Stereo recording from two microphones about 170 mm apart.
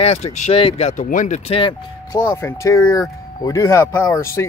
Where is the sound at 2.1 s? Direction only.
15° left (ahead or behind).